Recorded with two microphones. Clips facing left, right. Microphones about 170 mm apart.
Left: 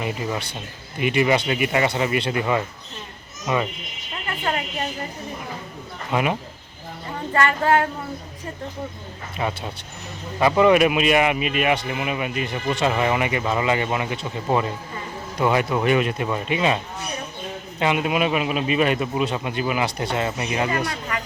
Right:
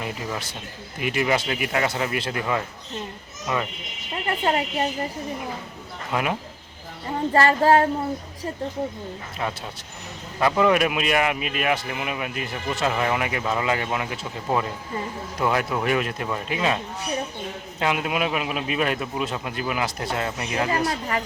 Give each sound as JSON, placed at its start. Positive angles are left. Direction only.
{"t": 0.0, "sound": "speech", "side_deg": 0}
{"t": 4.1, "sound": "cricket", "side_deg": -30}
{"t": 6.1, "sound": "speech", "side_deg": 0}
{"t": 7.3, "sound": "speech", "side_deg": -35}
{"t": 9.4, "sound": "speech", "side_deg": 5}
{"t": 20.7, "sound": "speech", "side_deg": -30}